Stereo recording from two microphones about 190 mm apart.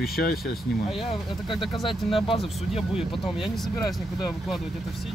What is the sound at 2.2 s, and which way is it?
Speech, 30° left (ahead or behind).